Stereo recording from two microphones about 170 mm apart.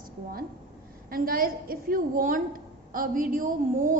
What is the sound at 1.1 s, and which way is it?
A woman's voice, 60° right (ahead or behind).